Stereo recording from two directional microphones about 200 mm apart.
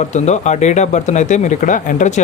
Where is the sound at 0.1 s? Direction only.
35° left (ahead or behind).